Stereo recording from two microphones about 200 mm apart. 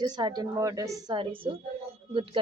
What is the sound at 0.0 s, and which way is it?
A woman's voice, 20° right (ahead or behind).